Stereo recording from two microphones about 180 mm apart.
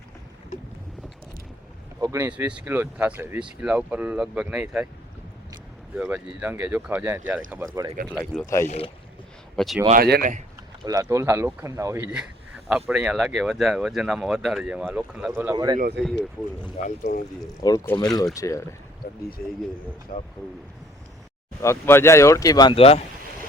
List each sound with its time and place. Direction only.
2.0 s speech: 15° right (ahead or behind)
6.0 s speech: 10° right (ahead or behind)
8.0 s speech: 5° left (ahead or behind)
8.6 s speech: 35° left (ahead or behind)
9.6 s speech: centre (ahead or behind)
9.9 s speech: 55° right (ahead or behind)
10.8 s speech: 20° right (ahead or behind)
15.5 s speech: 25° right (ahead or behind)
17.0 s speech: 55° left (ahead or behind)
17.4 s speech: 20° left (ahead or behind)
20.1 s speech: 45° left (ahead or behind)
21.6 s speech: 15° left (ahead or behind); by 23.0 s 35° left (ahead or behind)